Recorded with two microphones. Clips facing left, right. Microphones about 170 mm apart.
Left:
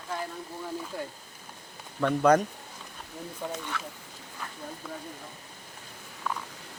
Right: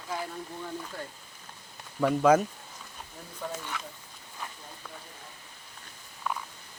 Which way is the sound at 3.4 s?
20° left (ahead or behind).